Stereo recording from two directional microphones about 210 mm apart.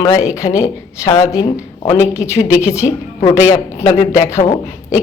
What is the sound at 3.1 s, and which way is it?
A man's voice, 25° left (ahead or behind).